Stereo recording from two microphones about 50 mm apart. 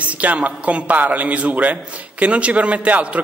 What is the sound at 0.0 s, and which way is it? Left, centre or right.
A man's voice, right.